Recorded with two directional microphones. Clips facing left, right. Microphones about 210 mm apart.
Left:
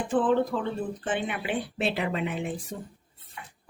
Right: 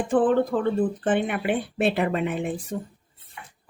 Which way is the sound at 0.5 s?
50° right (ahead or behind).